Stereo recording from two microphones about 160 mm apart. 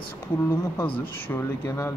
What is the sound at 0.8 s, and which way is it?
Speech, 10° left (ahead or behind).